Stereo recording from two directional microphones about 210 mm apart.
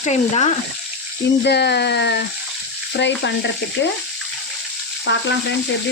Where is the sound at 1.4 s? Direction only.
55° left (ahead or behind).